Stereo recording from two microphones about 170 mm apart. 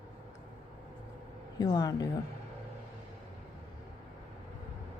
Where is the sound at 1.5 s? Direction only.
25° left (ahead or behind).